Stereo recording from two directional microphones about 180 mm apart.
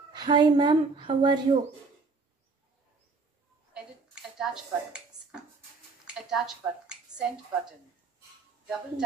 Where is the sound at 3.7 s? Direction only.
5° right (ahead or behind).